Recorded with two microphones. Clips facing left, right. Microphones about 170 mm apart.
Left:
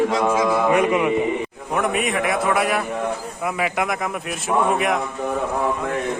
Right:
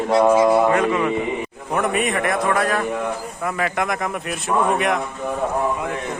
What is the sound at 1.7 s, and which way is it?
A man's voice, centre (ahead or behind).